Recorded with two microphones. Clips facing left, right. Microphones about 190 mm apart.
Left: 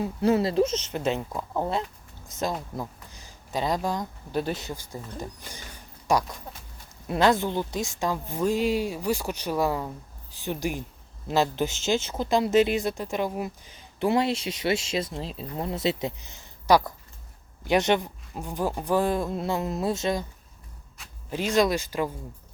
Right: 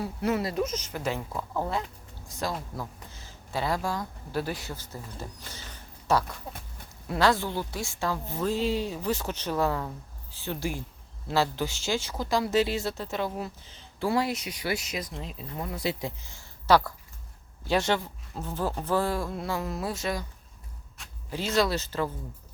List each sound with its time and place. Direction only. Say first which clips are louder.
0.0 s speech: left 5 dB; 25° left (ahead or behind)
21.2 s speech: left 3 dB; 15° left (ahead or behind)